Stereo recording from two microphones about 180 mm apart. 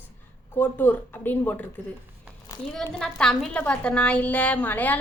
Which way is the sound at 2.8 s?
5° left (ahead or behind).